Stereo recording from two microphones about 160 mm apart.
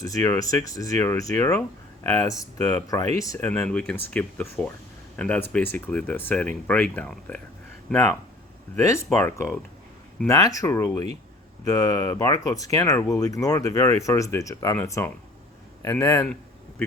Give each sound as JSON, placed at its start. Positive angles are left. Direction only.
{"t": 0.0, "sound": "speech", "side_deg": 20}
{"t": 3.4, "sound": "speech", "side_deg": 5}
{"t": 8.7, "sound": "speech", "side_deg": 20}
{"t": 16.2, "sound": "a sound", "side_deg": 5}